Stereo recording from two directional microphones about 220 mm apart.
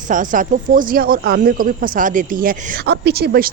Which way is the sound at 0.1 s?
35° right (ahead or behind).